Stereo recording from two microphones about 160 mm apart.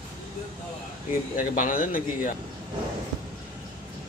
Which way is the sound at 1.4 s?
55° left (ahead or behind).